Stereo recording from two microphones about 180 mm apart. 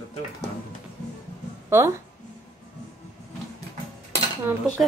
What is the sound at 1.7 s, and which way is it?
Speech, 10° right (ahead or behind).